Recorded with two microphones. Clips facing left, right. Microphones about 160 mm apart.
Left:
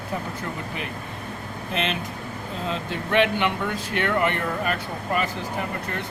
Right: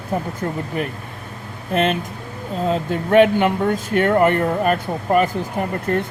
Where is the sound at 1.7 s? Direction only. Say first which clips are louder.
Right 8 dB; 50° right (ahead or behind).